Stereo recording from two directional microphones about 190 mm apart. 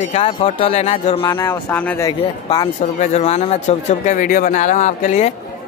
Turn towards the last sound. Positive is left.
turn(degrees=40)  # may be behind; listen again after turning